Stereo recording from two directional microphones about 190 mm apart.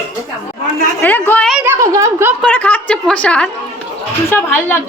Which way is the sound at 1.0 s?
10° left (ahead or behind).